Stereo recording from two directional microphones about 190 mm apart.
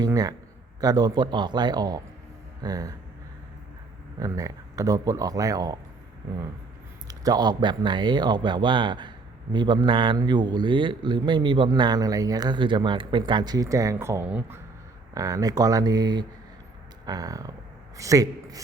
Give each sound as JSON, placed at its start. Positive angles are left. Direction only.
{"t": 0.0, "sound": "speech", "side_deg": -20}
{"t": 4.2, "sound": "speech", "side_deg": -20}
{"t": 7.1, "sound": "a man's voice", "side_deg": -20}